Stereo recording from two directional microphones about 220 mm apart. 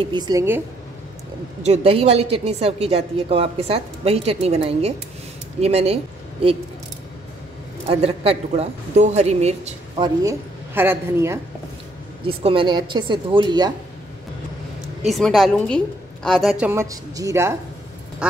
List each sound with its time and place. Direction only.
0.0 s speech: 20° right (ahead or behind)
1.6 s a woman's voice: 30° right (ahead or behind)
7.9 s a woman's voice: 25° right (ahead or behind)
10.7 s speech: 10° right (ahead or behind)
12.3 s a woman's voice: 25° right (ahead or behind)
15.0 s a woman's voice: centre (ahead or behind)